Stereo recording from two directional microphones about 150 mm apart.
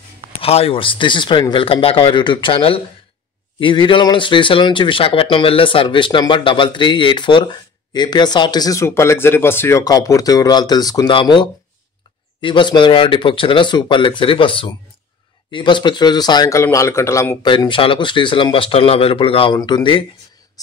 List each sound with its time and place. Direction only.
0.4 s speech: 40° left (ahead or behind); by 17.5 s 20° left (ahead or behind)
17.5 s speech: 35° left (ahead or behind)
20.6 s whispering: 25° left (ahead or behind)